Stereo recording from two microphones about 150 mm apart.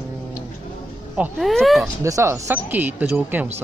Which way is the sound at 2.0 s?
20° right (ahead or behind).